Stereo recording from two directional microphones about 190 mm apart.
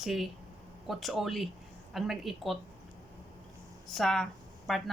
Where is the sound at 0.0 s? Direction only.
Centre (ahead or behind).